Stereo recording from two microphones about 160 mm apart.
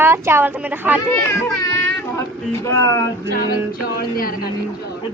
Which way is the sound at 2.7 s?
20° left (ahead or behind).